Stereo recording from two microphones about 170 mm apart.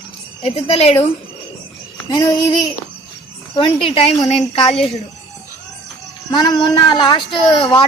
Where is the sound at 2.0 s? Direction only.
25° left (ahead or behind).